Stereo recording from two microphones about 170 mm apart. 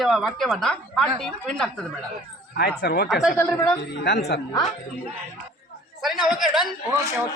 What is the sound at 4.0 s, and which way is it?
Speech, 80° left.